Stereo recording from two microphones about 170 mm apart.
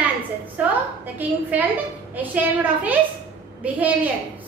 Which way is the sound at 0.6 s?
10° right (ahead or behind).